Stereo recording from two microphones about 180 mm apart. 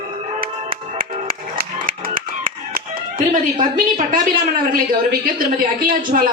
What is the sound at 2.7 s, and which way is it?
Speech, 50° right (ahead or behind).